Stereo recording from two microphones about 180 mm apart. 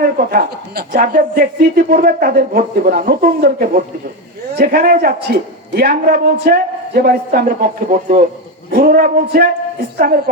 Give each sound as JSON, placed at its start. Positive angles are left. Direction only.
{"t": 0.0, "sound": "speech", "side_deg": -60}